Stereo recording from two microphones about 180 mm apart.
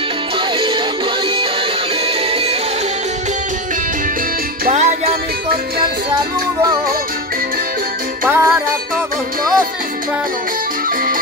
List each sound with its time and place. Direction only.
4.6 s music: 40° right (ahead or behind)
8.3 s music: 10° right (ahead or behind)